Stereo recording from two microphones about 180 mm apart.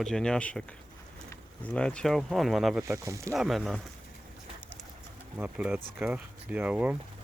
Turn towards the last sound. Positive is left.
turn(degrees=-10)  # may be behind; listen again after turning